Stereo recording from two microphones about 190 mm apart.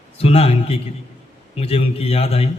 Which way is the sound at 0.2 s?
30° left (ahead or behind).